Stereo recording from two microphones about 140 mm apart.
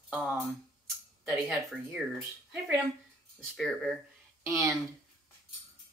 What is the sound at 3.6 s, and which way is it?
Speech, 5° left (ahead or behind).